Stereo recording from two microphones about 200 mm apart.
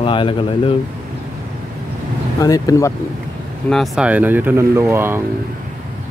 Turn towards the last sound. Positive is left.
turn(degrees=-10)  # may be behind; listen again after turning